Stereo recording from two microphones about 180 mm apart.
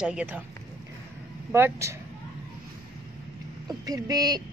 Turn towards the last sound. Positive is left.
turn(degrees=-20)  # may be behind; listen again after turning